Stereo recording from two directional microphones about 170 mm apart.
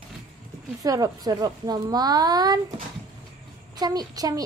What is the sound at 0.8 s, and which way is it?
A woman's voice, 20° right (ahead or behind).